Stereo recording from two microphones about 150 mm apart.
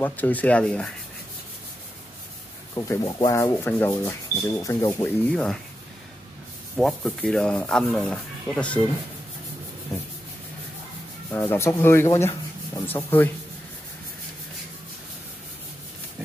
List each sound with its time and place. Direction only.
0.0 s speech: 10° left (ahead or behind)
2.7 s speech: 25° left (ahead or behind)
5.3 s rub: 5° left (ahead or behind)
6.8 s rub: 5° left (ahead or behind)
9.9 s speech: 20° left (ahead or behind)
11.3 s speech: 15° left (ahead or behind)